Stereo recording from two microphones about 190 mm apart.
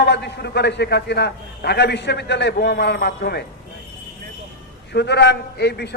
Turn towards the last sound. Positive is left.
turn(degrees=60)  # may be behind; listen again after turning